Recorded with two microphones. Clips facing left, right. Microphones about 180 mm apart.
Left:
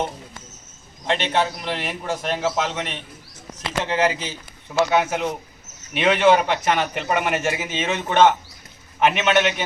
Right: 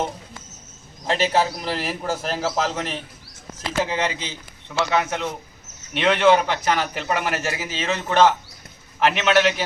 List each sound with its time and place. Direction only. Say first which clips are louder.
1.2 s a man's voice: right 5 dB; 5° right (ahead or behind)
3.8 s a man's voice: left 4 dB; 5° left (ahead or behind)